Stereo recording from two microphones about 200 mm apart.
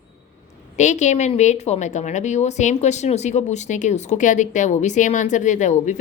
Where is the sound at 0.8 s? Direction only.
35° left (ahead or behind).